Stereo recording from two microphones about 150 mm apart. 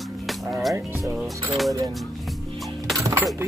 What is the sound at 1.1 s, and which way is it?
Speech, centre (ahead or behind).